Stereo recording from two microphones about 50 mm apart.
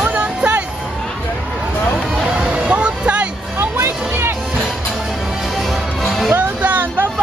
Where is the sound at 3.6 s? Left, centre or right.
Right.